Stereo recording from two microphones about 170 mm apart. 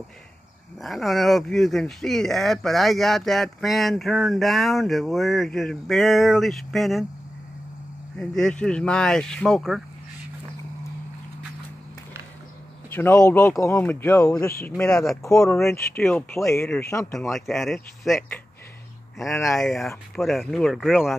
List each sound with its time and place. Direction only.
0.7 s speech: centre (ahead or behind)
8.2 s speech: 5° left (ahead or behind)
12.9 s speech: 15° left (ahead or behind)
14.8 s speech: 5° left (ahead or behind)
17.3 s speech: centre (ahead or behind)
19.6 s speech: centre (ahead or behind)